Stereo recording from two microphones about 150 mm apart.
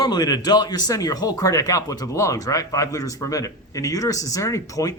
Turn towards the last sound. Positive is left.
turn(degrees=20)  # may be behind; listen again after turning